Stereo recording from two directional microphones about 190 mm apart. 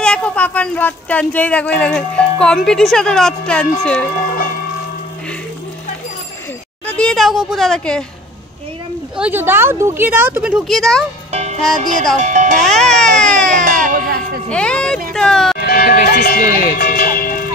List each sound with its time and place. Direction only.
0.0 s speech: 5° left (ahead or behind)
6.9 s a woman's voice: 5° left (ahead or behind)
9.1 s speech: 10° right (ahead or behind)
12.2 s speech: 40° right (ahead or behind)
12.5 s baby cry: centre (ahead or behind)
13.5 s music: 45° right (ahead or behind)
14.5 s speech: 5° left (ahead or behind)
15.6 s music: 55° left (ahead or behind)
16.1 s speech: 50° left (ahead or behind)
16.7 s music: 50° left (ahead or behind)